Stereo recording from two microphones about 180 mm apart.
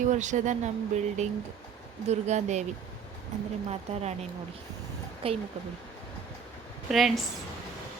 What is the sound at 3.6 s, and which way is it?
Speech, 35° right (ahead or behind).